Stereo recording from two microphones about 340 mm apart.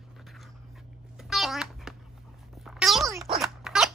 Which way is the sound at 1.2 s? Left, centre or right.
Centre.